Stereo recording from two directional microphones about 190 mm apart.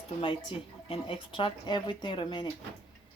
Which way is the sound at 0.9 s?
25° left (ahead or behind).